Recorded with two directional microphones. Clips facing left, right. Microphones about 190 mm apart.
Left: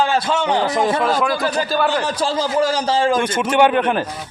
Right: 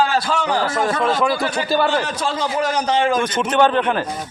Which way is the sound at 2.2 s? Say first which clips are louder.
Left 3 dB; 30° left (ahead or behind).